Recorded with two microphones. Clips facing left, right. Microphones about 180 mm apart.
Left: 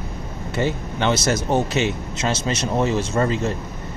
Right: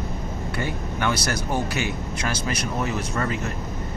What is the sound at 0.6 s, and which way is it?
Speech, 25° left (ahead or behind).